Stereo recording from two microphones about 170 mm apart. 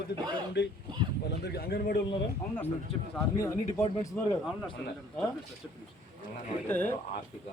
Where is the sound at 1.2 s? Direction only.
75° left (ahead or behind).